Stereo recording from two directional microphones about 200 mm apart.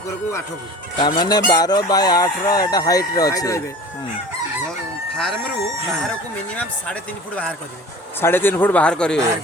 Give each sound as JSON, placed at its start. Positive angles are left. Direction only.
{"t": 1.0, "sound": "speech", "side_deg": 20}
{"t": 5.1, "sound": "speech", "side_deg": 0}